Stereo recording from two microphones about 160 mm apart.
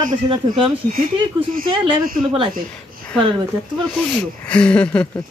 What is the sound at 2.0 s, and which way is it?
Speech, 60° right (ahead or behind).